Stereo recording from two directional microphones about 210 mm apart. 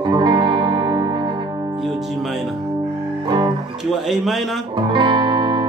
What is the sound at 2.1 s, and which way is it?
Music, centre (ahead or behind).